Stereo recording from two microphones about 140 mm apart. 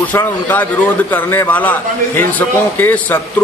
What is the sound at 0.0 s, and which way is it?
A man's voice, 15° left (ahead or behind).